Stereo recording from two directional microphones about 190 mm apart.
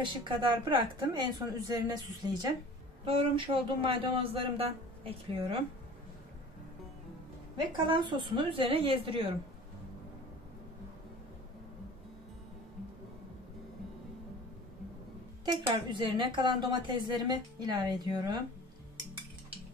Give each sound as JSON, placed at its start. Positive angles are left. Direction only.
{"t": 0.0, "sound": "speech", "side_deg": -25}
{"t": 7.8, "sound": "speech", "side_deg": -25}
{"t": 15.4, "sound": "speech", "side_deg": -25}